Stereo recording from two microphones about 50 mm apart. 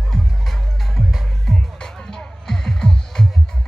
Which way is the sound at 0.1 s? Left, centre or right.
Centre.